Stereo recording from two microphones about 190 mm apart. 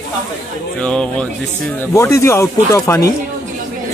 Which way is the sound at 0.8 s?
5° left (ahead or behind).